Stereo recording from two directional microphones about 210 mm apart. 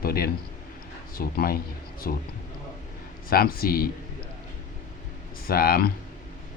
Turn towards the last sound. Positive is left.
turn(degrees=45)  # may be behind; listen again after turning